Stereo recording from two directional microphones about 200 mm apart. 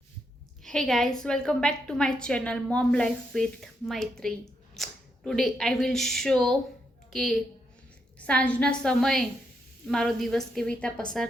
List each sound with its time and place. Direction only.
0.6 s a woman's voice: 5° left (ahead or behind)